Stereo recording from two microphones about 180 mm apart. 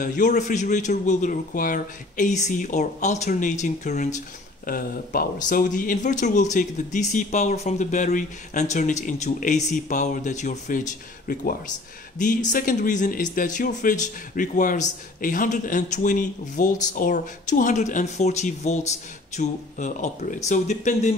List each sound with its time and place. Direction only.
0.0 s speech: 45° left (ahead or behind)